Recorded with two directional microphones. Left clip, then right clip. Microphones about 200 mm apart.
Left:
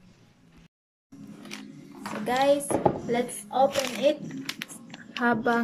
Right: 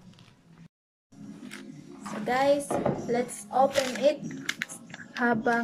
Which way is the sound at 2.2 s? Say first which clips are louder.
Left 1 dB; centre (ahead or behind).